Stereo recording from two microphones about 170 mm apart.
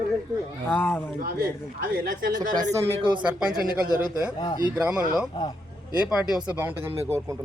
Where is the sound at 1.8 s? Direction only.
55° right (ahead or behind).